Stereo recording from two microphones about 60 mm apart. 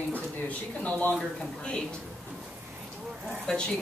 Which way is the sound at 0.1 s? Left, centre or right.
Left.